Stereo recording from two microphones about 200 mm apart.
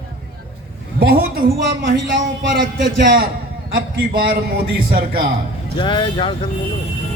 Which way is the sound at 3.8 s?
50° right (ahead or behind).